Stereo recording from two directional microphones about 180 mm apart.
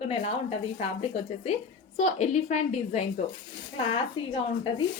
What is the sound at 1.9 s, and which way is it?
A woman's voice, 40° left (ahead or behind).